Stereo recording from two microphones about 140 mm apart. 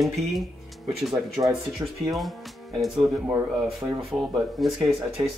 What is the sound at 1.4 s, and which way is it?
Speech, 25° right (ahead or behind).